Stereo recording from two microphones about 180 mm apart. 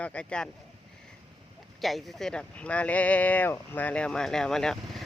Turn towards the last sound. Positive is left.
turn(degrees=5)  # may be behind; listen again after turning